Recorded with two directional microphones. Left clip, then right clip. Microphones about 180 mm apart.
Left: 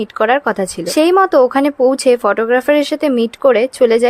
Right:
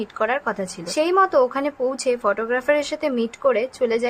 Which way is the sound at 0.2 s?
45° left (ahead or behind).